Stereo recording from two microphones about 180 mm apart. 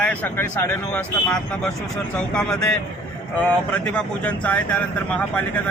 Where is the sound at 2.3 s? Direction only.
5° left (ahead or behind).